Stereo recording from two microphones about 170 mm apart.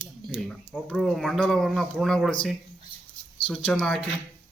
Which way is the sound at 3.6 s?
5° left (ahead or behind).